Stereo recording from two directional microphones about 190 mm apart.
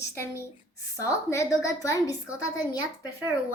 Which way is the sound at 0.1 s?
15° left (ahead or behind).